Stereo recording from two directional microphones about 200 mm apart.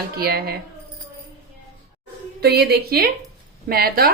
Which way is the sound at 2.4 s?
55° right (ahead or behind).